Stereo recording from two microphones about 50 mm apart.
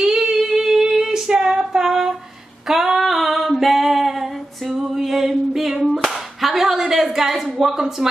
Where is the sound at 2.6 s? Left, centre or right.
Centre.